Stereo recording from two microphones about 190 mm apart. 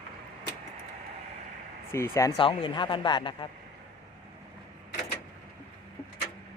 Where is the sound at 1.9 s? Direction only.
15° left (ahead or behind).